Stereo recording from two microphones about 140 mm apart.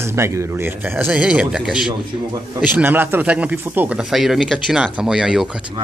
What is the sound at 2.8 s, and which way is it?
Speech, 15° right (ahead or behind).